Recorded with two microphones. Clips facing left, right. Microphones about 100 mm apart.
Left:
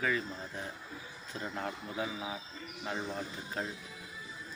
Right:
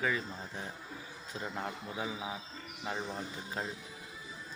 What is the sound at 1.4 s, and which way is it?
Speech, 15° right (ahead or behind).